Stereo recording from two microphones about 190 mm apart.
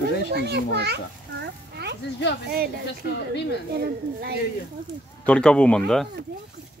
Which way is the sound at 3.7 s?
55° right (ahead or behind).